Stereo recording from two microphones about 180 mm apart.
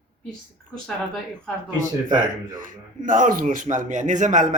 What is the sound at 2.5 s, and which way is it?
Speech, 45° right (ahead or behind).